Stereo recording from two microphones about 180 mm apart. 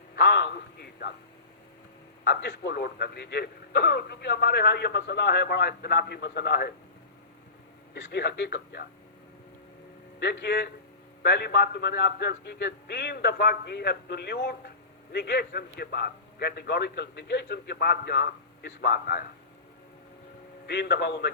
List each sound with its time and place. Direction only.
0.2 s a man's voice: 70° left (ahead or behind)
2.2 s speech: 70° left (ahead or behind)
7.9 s a man's voice: 75° left (ahead or behind)
10.2 s a man's voice: 70° left (ahead or behind)
20.7 s a man's voice: 70° left (ahead or behind)